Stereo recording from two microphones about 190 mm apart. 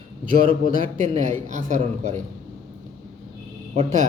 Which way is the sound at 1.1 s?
40° right (ahead or behind).